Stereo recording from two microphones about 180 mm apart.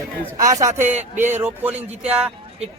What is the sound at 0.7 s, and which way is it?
Speech, 40° right (ahead or behind).